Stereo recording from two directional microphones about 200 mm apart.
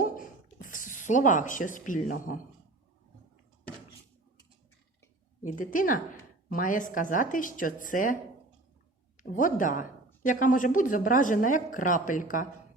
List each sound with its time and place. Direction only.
0.7 s speech: 40° left (ahead or behind)
5.4 s speech: 40° left (ahead or behind)